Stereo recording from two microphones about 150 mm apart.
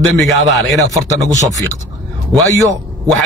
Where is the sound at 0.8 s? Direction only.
20° right (ahead or behind).